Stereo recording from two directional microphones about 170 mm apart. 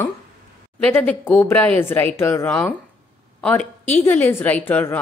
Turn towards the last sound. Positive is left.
turn(degrees=10)  # may be behind; listen again after turning